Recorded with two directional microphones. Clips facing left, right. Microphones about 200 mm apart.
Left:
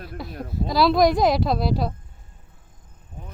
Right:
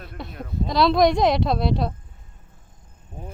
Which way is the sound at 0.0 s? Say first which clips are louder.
Left 2 dB; centre (ahead or behind).